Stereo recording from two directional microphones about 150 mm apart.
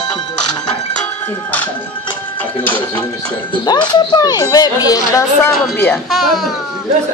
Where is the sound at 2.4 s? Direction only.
10° left (ahead or behind).